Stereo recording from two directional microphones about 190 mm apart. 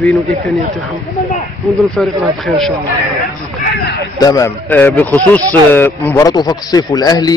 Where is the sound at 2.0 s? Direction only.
Centre (ahead or behind).